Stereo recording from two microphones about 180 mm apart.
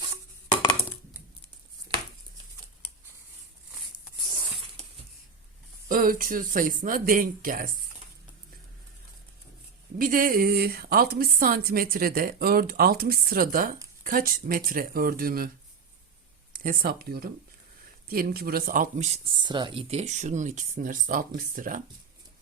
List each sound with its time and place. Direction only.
0.4 s a sound: 25° left (ahead or behind)
5.9 s speech: 50° right (ahead or behind)
10.0 s a woman's voice: 50° right (ahead or behind)
16.5 s speech: 55° right (ahead or behind)